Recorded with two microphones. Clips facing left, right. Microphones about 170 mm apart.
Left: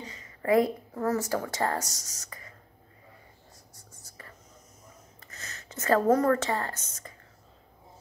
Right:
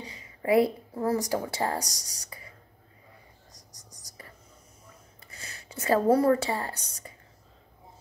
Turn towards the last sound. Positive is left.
turn(degrees=-10)  # may be behind; listen again after turning